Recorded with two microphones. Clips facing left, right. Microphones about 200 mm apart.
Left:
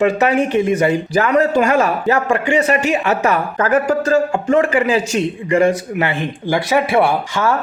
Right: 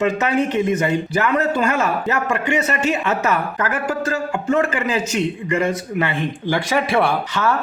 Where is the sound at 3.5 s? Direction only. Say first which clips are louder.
Left 7 dB; 30° left (ahead or behind).